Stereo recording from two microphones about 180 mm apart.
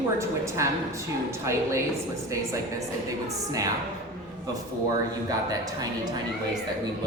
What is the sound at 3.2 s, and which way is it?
Speech, 20° right (ahead or behind).